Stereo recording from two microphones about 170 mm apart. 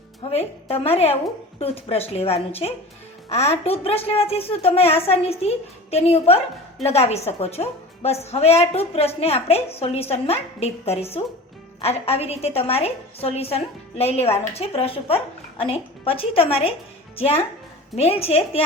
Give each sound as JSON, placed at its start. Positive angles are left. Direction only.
{"t": 0.2, "sound": "a woman's voice", "side_deg": 35}